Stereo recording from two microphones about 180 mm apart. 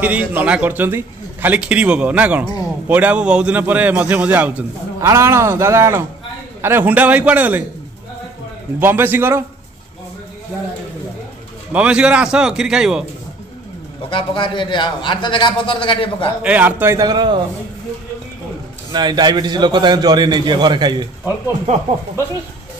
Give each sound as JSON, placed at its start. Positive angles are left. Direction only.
{"t": 0.0, "sound": "a man's voice", "side_deg": -10}
{"t": 8.7, "sound": "a man's voice", "side_deg": -10}
{"t": 11.7, "sound": "a man's voice", "side_deg": -5}
{"t": 14.1, "sound": "a man's voice", "side_deg": 30}
{"t": 16.4, "sound": "a man's voice", "side_deg": -10}
{"t": 18.9, "sound": "a man's voice", "side_deg": -25}